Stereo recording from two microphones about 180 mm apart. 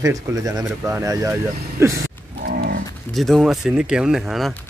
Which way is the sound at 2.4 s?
55° right (ahead or behind).